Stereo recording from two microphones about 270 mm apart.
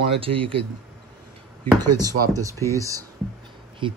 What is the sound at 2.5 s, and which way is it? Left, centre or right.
Speech, centre.